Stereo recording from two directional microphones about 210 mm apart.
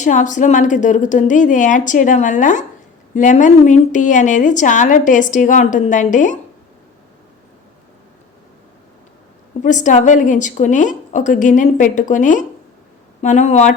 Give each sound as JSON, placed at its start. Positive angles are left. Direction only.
{"t": 0.0, "sound": "a woman's voice", "side_deg": 35}
{"t": 9.6, "sound": "a woman's voice", "side_deg": 35}